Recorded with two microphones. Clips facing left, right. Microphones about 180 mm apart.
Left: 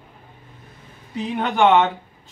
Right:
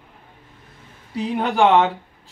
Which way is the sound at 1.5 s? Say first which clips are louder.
Even; 35° right (ahead or behind).